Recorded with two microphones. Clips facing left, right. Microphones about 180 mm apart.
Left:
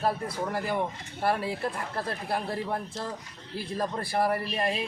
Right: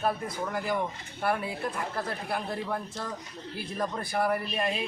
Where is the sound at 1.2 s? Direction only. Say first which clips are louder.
Left 2 dB; 30° left (ahead or behind).